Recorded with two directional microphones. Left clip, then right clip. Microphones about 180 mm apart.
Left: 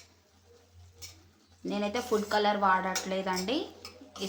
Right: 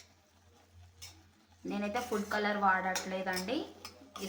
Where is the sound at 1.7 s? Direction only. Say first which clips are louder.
Left 5 dB; 35° left (ahead or behind).